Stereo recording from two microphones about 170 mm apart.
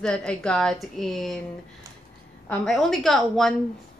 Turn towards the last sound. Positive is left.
turn(degrees=0)  # may be behind; listen again after turning